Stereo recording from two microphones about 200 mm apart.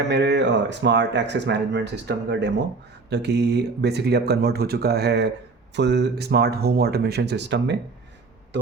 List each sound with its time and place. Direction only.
0.1 s speech: 60° right (ahead or behind)